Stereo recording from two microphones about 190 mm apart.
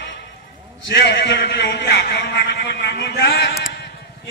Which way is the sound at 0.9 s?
65° left (ahead or behind).